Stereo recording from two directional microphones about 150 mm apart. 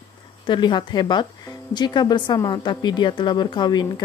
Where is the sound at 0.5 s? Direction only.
30° left (ahead or behind).